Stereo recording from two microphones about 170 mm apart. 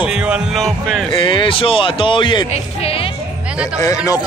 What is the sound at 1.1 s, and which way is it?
Speech, 30° left (ahead or behind).